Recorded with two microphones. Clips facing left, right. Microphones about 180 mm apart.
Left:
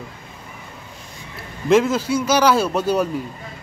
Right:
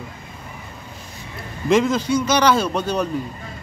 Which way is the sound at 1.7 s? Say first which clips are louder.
Left 1 dB; 5° left (ahead or behind).